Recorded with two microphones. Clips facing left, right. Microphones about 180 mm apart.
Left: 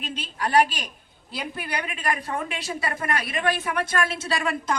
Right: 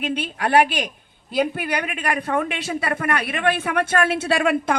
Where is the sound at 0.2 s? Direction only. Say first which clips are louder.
Right 2 dB; 65° right (ahead or behind).